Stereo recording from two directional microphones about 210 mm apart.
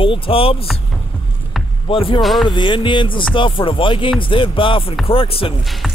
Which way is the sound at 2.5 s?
20° left (ahead or behind).